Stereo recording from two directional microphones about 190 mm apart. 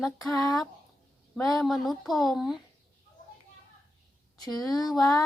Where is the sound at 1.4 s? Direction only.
Centre (ahead or behind).